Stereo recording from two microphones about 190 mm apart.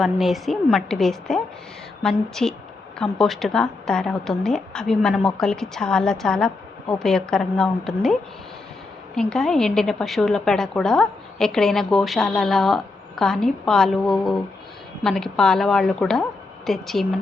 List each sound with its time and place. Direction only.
0.0 s a woman's voice: centre (ahead or behind)
9.1 s a woman's voice: centre (ahead or behind)